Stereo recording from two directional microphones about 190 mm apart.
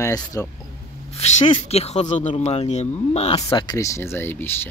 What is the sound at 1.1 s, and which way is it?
Speech, 35° left (ahead or behind).